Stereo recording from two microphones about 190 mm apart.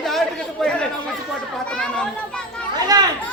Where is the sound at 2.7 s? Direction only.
20° right (ahead or behind).